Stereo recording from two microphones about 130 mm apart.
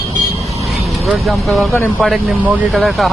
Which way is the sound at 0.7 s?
Centre (ahead or behind).